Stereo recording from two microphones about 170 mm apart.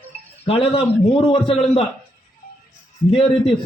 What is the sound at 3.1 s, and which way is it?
Speech, 35° left (ahead or behind).